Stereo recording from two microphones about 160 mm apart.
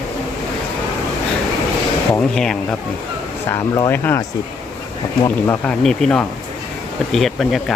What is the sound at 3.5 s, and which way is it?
Speech, 15° left (ahead or behind).